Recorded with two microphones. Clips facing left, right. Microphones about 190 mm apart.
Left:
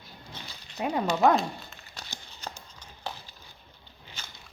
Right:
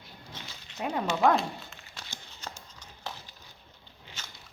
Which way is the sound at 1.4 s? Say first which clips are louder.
Left 2 dB; 40° left (ahead or behind).